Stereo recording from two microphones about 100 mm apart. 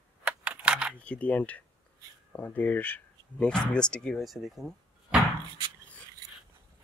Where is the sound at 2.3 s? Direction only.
20° left (ahead or behind); by 5.2 s 5° right (ahead or behind).